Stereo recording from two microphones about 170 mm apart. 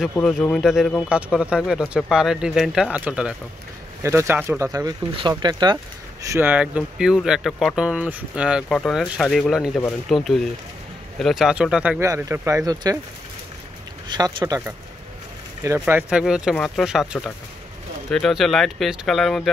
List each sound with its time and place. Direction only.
0.6 s speech: centre (ahead or behind); by 5.8 s 25° right (ahead or behind)
6.3 s speech: 10° right (ahead or behind)
12.0 s speech: 20° right (ahead or behind)
14.0 s speech: 25° right (ahead or behind)
15.8 s speech: 10° right (ahead or behind)